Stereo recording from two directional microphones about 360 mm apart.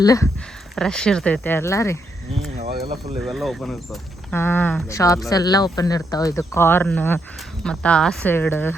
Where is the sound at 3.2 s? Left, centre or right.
Centre.